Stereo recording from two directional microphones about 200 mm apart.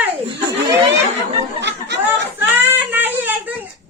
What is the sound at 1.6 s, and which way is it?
Chatter, 60° right (ahead or behind).